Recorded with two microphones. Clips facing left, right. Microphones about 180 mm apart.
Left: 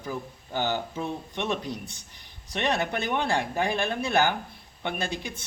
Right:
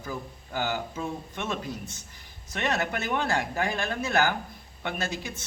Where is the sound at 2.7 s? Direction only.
25° left (ahead or behind).